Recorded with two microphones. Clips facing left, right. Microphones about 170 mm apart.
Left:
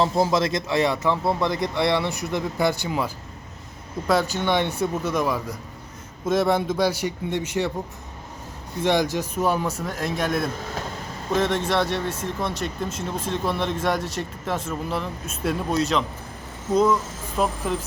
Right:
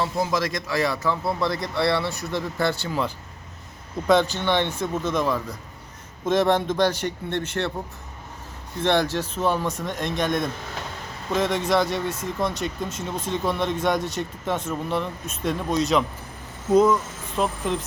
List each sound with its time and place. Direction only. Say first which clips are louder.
0.0 s speech: left 4 dB; 30° left (ahead or behind); by 3.1 s 15° left (ahead or behind)
4.0 s speech: right 2 dB; 5° left (ahead or behind)
8.8 s speech: even; 10° left (ahead or behind)